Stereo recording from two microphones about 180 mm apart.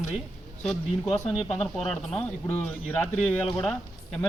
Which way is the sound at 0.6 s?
Centre (ahead or behind).